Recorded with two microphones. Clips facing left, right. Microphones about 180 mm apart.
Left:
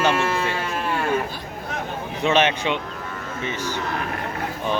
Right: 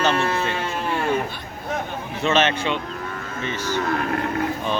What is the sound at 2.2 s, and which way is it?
Speech, 15° left (ahead or behind).